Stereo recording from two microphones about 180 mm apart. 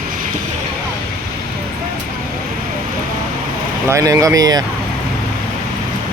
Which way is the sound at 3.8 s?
15° right (ahead or behind).